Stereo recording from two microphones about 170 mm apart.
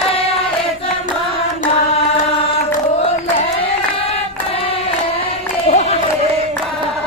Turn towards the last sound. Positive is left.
turn(degrees=40)  # may be behind; listen again after turning